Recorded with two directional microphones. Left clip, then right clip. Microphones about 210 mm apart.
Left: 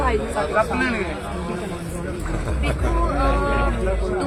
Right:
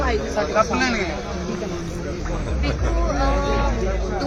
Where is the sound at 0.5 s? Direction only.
50° right (ahead or behind).